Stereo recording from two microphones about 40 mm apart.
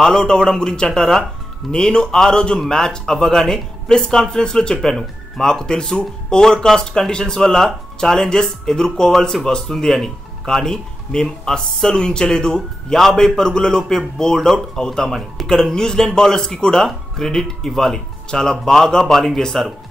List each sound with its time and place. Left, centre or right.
0.0 s a man's voice: centre